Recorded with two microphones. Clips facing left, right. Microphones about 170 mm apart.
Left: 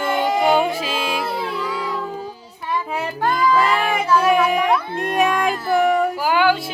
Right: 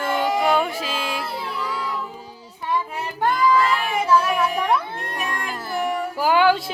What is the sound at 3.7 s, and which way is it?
Child singing, 90° left.